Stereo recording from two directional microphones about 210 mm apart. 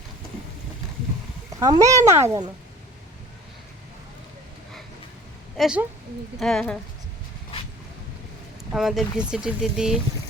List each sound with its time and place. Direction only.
1.5 s speech: 15° right (ahead or behind)
5.5 s a woman's voice: centre (ahead or behind)
8.7 s speech: centre (ahead or behind)